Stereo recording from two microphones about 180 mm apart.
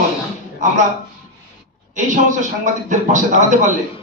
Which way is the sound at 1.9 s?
45° right (ahead or behind).